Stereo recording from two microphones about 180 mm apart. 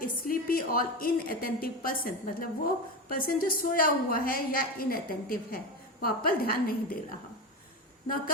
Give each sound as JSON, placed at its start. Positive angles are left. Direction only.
{"t": 0.0, "sound": "a woman's voice", "side_deg": 50}